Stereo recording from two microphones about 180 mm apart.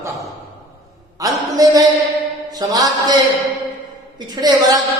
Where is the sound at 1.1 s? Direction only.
20° right (ahead or behind).